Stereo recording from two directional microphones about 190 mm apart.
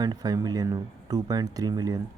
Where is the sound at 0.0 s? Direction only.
20° right (ahead or behind).